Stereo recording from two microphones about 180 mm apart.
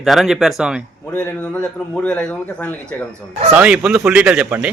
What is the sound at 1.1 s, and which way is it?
Speech, 10° left (ahead or behind).